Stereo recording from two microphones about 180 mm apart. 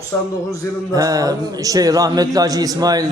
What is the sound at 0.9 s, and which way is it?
A man's voice, 20° right (ahead or behind).